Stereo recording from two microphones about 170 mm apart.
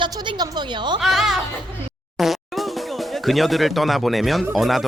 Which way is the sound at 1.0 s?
Centre (ahead or behind).